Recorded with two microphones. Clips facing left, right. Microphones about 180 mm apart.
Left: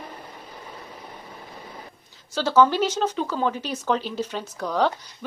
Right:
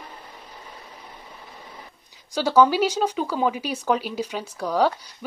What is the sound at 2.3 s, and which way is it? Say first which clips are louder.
Speech: right 1 dB; 15° right (ahead or behind).